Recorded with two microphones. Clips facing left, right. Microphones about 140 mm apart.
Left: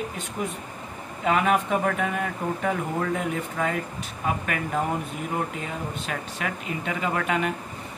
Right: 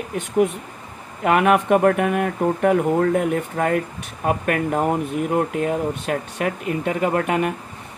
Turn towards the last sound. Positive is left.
turn(degrees=-50)  # may be behind; listen again after turning